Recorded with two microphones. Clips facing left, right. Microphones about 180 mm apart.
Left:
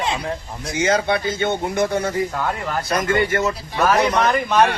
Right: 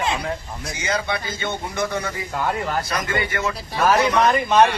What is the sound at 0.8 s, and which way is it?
Speech, 60° left (ahead or behind).